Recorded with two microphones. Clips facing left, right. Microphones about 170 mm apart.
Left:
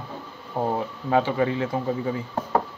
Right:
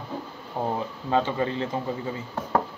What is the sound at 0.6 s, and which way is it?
Speech, 20° left (ahead or behind).